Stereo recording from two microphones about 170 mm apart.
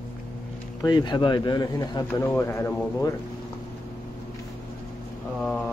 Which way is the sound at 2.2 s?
15° left (ahead or behind).